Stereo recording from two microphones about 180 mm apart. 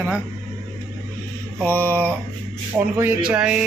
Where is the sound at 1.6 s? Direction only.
10° left (ahead or behind).